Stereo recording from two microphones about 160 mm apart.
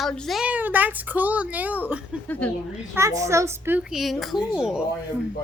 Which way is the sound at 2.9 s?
20° right (ahead or behind).